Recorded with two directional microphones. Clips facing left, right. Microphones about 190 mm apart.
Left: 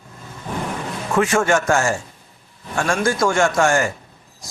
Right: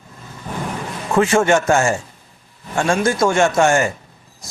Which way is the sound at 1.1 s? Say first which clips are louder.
Right 3 dB; 25° right (ahead or behind).